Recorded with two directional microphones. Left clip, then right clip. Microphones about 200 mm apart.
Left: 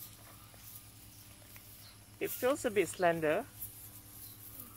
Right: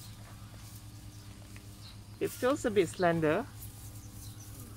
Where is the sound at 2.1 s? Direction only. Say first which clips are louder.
Right 2 dB; 20° left (ahead or behind).